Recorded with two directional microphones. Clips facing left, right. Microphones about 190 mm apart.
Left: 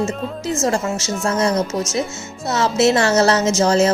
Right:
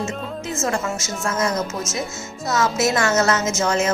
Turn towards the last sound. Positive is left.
turn(degrees=35)  # may be behind; listen again after turning